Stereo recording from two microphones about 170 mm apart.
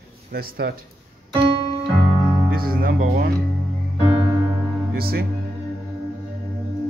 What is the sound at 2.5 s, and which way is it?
Speech, 60° right (ahead or behind).